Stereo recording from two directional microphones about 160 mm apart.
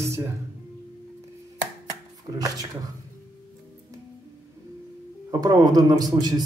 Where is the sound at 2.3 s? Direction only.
25° right (ahead or behind).